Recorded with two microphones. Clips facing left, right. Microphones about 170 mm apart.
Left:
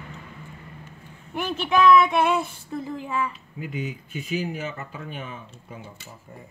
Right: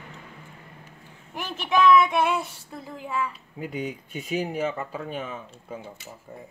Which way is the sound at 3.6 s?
35° right (ahead or behind).